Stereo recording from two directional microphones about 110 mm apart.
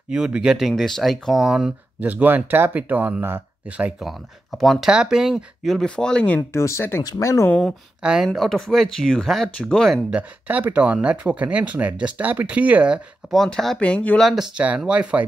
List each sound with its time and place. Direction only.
0.1 s speech: 5° right (ahead or behind)
4.0 s speech: centre (ahead or behind)
6.5 s speech: 25° left (ahead or behind)
8.0 s speech: 10° right (ahead or behind)
10.1 s speech: 15° right (ahead or behind)
13.3 s speech: 5° left (ahead or behind)
14.6 s speech: 10° right (ahead or behind)